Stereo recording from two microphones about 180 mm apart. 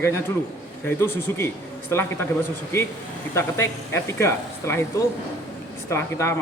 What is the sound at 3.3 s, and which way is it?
Speech, 15° left (ahead or behind).